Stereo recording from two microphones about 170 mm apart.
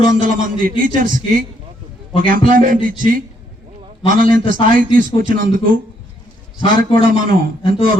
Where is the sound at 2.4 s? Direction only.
55° right (ahead or behind).